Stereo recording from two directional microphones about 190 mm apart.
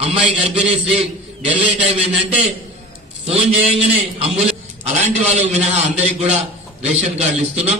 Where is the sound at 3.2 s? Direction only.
30° right (ahead or behind).